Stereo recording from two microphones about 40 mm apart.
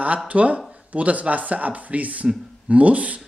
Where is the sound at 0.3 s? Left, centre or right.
Right.